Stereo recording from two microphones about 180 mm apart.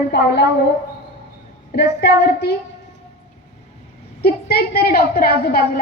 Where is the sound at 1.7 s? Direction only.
65° left (ahead or behind).